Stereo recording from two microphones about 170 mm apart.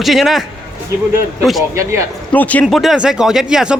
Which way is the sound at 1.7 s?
20° right (ahead or behind).